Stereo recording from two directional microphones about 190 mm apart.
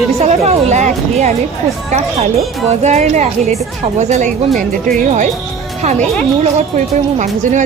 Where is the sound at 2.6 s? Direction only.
35° right (ahead or behind).